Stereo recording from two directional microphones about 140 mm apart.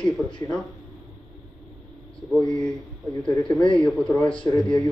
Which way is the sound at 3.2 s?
5° left (ahead or behind).